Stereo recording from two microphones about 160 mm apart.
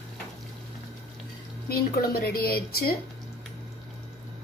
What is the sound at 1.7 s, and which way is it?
A woman's voice, 75° left (ahead or behind).